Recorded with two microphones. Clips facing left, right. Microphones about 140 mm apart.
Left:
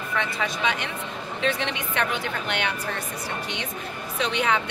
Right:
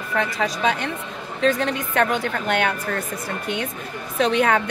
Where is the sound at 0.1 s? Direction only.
40° right (ahead or behind).